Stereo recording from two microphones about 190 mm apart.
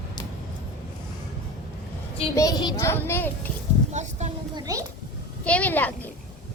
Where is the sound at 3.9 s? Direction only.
40° right (ahead or behind).